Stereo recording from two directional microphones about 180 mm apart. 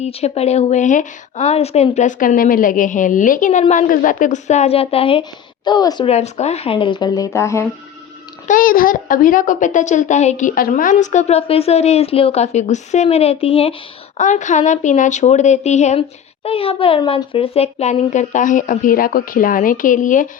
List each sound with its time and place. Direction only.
0.0 s a woman's voice: 35° left (ahead or behind)
6.1 s speech: 40° left (ahead or behind); by 7.7 s 15° left (ahead or behind)
8.4 s a woman's voice: 50° left (ahead or behind); by 13.7 s 30° left (ahead or behind)
14.2 s a woman's voice: 45° left (ahead or behind)